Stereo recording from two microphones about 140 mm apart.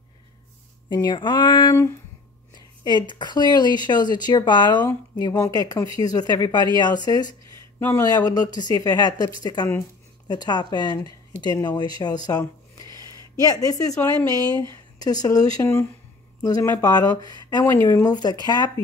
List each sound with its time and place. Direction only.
0.8 s a woman's voice: 35° left (ahead or behind)
17.6 s speech: 15° left (ahead or behind)
18.0 s a woman's voice: 30° left (ahead or behind)